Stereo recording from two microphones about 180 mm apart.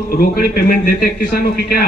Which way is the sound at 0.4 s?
60° left (ahead or behind).